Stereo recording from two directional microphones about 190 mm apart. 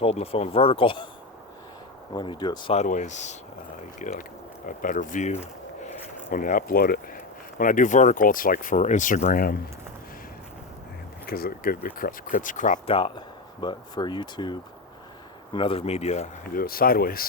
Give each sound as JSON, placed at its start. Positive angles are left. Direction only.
{"t": 0.0, "sound": "speech", "side_deg": 30}
{"t": 2.1, "sound": "speech", "side_deg": 25}
{"t": 2.8, "sound": "speech", "side_deg": 40}
{"t": 11.3, "sound": "speech", "side_deg": 50}
{"t": 12.9, "sound": "speech", "side_deg": 25}
{"t": 16.6, "sound": "speech", "side_deg": 50}